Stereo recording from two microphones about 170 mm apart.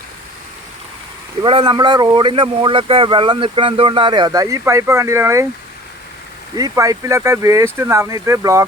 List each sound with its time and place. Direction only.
1.4 s speech: 30° right (ahead or behind)
6.6 s speech: 20° right (ahead or behind)